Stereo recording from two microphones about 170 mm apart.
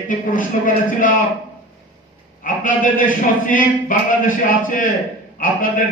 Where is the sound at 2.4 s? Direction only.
50° left (ahead or behind).